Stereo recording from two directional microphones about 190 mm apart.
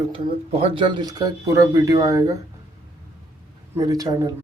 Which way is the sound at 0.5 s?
30° right (ahead or behind).